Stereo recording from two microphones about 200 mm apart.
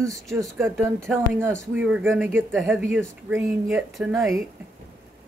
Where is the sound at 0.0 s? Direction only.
15° right (ahead or behind).